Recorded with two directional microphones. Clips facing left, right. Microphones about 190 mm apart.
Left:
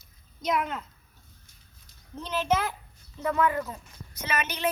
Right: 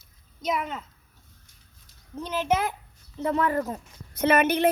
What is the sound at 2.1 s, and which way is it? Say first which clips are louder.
Speech: right 1 dB; 10° right (ahead or behind).